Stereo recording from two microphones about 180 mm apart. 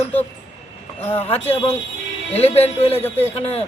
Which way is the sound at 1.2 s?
35° left (ahead or behind).